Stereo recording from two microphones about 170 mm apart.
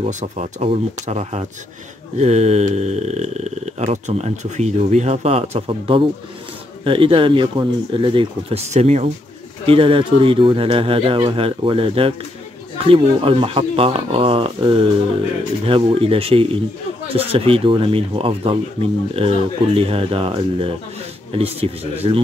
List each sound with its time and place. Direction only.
0.0 s speech: 45° right (ahead or behind)